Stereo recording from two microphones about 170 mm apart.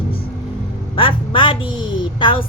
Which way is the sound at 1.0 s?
30° left (ahead or behind).